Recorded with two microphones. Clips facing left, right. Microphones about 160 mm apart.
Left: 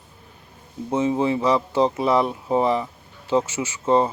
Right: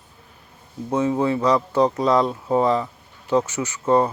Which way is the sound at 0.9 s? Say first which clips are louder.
Even; 25° left (ahead or behind).